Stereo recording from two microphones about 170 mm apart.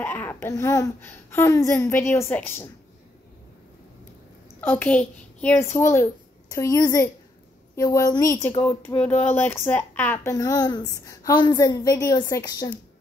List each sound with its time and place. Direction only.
0.0 s speech: 10° left (ahead or behind)
4.6 s a woman's voice: 10° left (ahead or behind)